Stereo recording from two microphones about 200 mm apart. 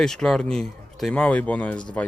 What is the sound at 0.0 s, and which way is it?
Speech, 5° left (ahead or behind).